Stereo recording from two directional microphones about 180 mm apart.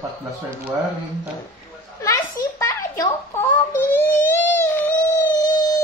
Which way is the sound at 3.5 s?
10° left (ahead or behind).